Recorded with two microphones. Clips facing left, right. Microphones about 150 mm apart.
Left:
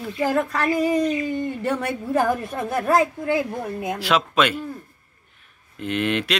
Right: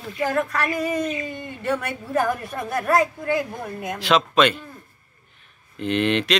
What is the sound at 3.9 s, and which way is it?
Speech, 10° left (ahead or behind).